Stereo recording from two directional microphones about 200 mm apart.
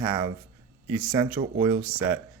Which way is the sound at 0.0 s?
10° right (ahead or behind).